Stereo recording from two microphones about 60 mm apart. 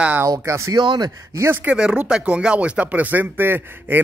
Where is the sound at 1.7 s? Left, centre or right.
Centre; by 4.0 s right.